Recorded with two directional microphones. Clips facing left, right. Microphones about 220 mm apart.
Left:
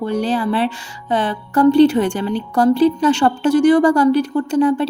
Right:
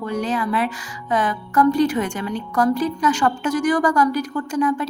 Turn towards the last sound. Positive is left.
turn(degrees=30)  # may be behind; listen again after turning